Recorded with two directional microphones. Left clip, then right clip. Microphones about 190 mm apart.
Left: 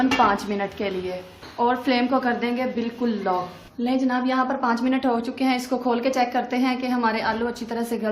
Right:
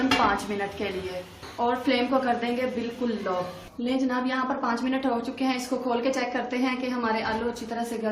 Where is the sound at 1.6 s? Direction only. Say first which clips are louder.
Left 3 dB; 50° left (ahead or behind).